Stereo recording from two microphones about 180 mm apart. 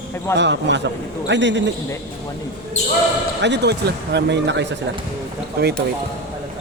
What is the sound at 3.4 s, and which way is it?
Speech, 70° right (ahead or behind).